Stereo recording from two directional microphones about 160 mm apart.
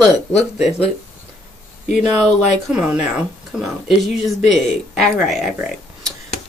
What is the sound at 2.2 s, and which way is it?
Speech, 5° right (ahead or behind).